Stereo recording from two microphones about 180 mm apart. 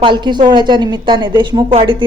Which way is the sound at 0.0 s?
25° right (ahead or behind).